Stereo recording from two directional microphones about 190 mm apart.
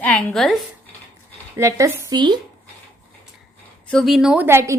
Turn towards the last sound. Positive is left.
turn(degrees=-15)  # may be behind; listen again after turning